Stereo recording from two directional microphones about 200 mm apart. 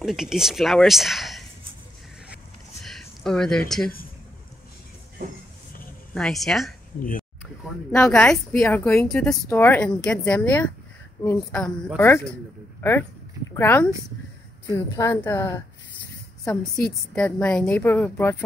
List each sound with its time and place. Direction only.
0.0 s speech: centre (ahead or behind)
2.8 s a sound: centre (ahead or behind)
6.1 s speech: centre (ahead or behind)
7.0 s speech: 45° left (ahead or behind)
7.9 s speech: 10° left (ahead or behind)
13.5 s speech: 10° left (ahead or behind)
15.0 s speech: 15° left (ahead or behind)
16.8 s speech: 5° left (ahead or behind)